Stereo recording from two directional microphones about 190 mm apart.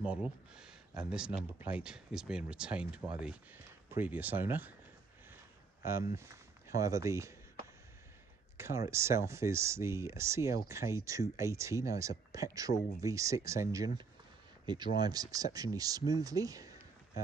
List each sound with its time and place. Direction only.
0.0 s speech: 5° right (ahead or behind)
5.9 s speech: 15° right (ahead or behind)
8.5 s speech: 15° right (ahead or behind)